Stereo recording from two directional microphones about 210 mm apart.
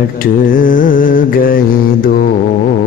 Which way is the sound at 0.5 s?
40° left (ahead or behind).